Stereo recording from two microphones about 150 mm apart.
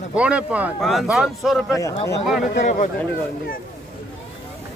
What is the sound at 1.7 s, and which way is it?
Speech, 25° left (ahead or behind).